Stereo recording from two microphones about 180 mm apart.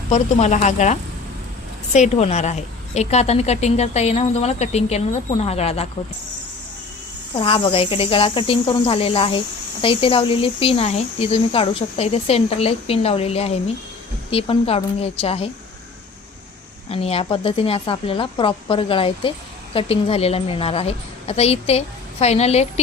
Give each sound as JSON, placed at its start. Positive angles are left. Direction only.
{"t": 0.1, "sound": "a woman's voice", "side_deg": 40}
{"t": 7.3, "sound": "a woman's voice", "side_deg": 30}
{"t": 16.9, "sound": "a woman's voice", "side_deg": 35}